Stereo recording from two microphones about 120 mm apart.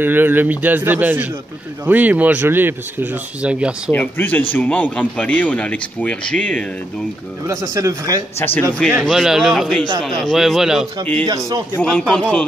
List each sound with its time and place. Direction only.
0.0 s speech: 15° right (ahead or behind)
3.9 s a man's voice: 15° left (ahead or behind)
7.4 s speech: 25° right (ahead or behind)
8.7 s a man's voice: 5° left (ahead or behind)
11.2 s speech: 30° right (ahead or behind)
11.7 s a man's voice: 10° left (ahead or behind)